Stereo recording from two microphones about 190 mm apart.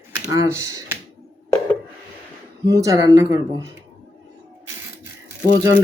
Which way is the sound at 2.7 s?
20° right (ahead or behind).